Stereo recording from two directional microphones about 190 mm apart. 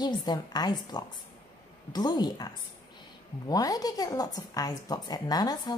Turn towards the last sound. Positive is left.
turn(degrees=20)  # may be behind; listen again after turning